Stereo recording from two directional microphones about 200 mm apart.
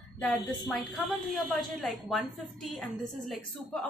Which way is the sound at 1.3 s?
Centre (ahead or behind).